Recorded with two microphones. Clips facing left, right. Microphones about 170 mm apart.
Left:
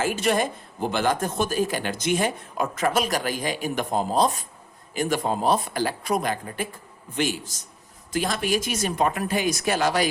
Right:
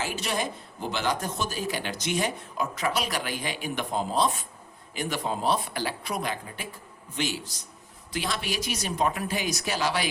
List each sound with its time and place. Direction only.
0.0 s a man's voice: 50° left (ahead or behind)